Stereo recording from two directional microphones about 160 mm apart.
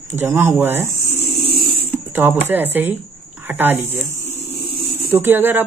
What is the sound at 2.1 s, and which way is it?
Speech, 15° right (ahead or behind).